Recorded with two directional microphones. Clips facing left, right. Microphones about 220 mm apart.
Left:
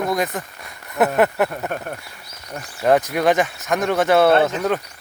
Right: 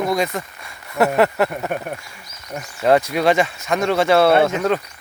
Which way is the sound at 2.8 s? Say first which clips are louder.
Right 1 dB; centre (ahead or behind).